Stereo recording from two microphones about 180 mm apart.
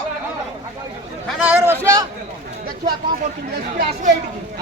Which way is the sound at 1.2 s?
5° right (ahead or behind).